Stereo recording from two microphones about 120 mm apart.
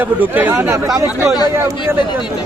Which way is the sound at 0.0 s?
15° right (ahead or behind).